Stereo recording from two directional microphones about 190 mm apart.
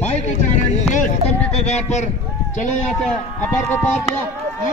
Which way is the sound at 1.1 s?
35° left (ahead or behind).